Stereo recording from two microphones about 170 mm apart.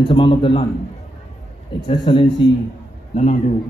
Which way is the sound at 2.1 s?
30° left (ahead or behind).